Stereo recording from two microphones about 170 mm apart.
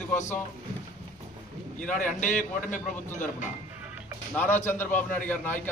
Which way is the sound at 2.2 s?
50° left (ahead or behind).